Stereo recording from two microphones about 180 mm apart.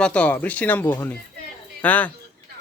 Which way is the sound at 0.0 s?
5° left (ahead or behind).